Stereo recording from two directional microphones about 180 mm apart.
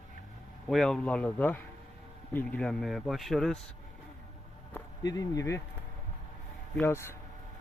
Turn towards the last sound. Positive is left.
turn(degrees=15)  # may be behind; listen again after turning